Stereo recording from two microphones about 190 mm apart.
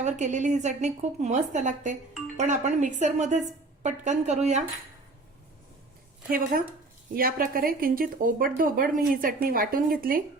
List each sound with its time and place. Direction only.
0.0 s a woman's voice: 40° right (ahead or behind)
6.3 s speech: 45° right (ahead or behind)